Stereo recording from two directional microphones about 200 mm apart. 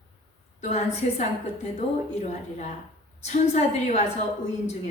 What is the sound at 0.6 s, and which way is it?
A woman's voice, 35° left (ahead or behind).